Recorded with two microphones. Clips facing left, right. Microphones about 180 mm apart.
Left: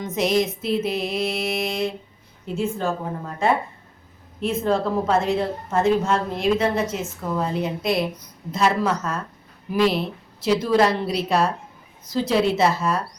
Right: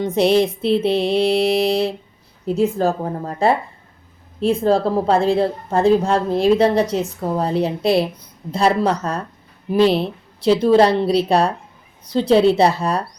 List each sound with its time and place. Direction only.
0.0 s a woman's voice: 30° right (ahead or behind)